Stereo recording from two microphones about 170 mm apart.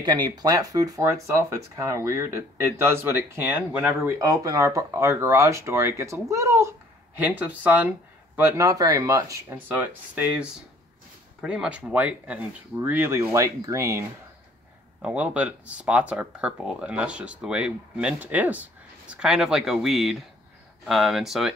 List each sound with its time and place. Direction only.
0.0 s speech: 25° right (ahead or behind); by 21.5 s centre (ahead or behind)